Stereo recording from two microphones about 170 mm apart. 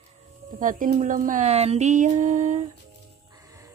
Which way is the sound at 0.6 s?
55° right (ahead or behind).